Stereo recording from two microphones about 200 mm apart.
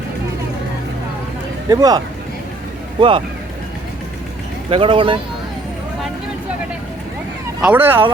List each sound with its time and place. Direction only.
1.7 s speech: 20° right (ahead or behind)
3.0 s speech: 25° right (ahead or behind)
4.7 s speech: 25° right (ahead or behind)
7.6 s speech: 10° right (ahead or behind)